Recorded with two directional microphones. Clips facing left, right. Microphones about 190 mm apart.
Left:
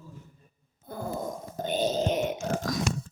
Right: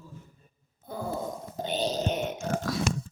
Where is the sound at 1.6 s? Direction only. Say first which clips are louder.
Left 2 dB; 50° left (ahead or behind).